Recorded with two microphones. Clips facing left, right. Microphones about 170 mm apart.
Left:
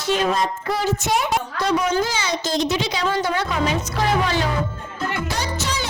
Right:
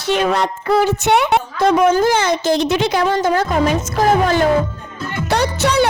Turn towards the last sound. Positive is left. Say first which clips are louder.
# right 10 dB
turn(degrees=-65)  # may be behind; listen again after turning